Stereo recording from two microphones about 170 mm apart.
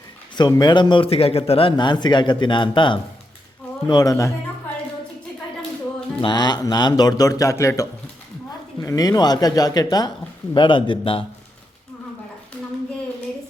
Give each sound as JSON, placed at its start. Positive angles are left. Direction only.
{"t": 0.3, "sound": "a man's voice", "side_deg": 25}
{"t": 6.2, "sound": "a man's voice", "side_deg": 25}